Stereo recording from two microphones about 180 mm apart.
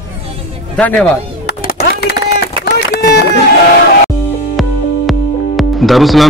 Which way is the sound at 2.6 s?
65° left (ahead or behind).